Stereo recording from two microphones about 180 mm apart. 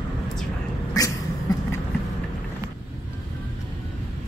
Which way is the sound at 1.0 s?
20° left (ahead or behind).